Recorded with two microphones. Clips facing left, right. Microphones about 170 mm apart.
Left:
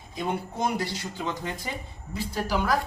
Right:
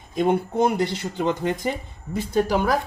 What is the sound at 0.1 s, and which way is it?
Speech, 55° right (ahead or behind).